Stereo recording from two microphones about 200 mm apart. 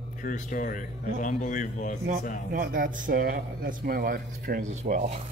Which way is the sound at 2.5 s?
45° right (ahead or behind).